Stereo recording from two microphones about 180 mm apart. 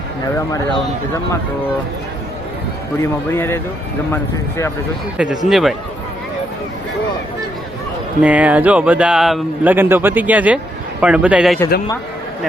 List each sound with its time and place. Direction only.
0.3 s speech: 20° left (ahead or behind)
3.0 s a man's voice: 15° left (ahead or behind)
5.1 s a man's voice: 5° right (ahead or behind)
8.2 s a man's voice: 10° right (ahead or behind)